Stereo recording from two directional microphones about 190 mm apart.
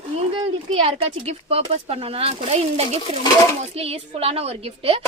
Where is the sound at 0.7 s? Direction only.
30° right (ahead or behind).